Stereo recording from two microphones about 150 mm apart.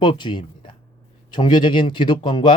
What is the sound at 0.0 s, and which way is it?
Speech, 30° left (ahead or behind).